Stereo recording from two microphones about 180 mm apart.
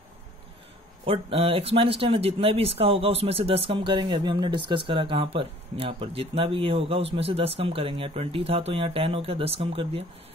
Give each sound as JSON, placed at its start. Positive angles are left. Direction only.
{"t": 1.0, "sound": "speech", "side_deg": -30}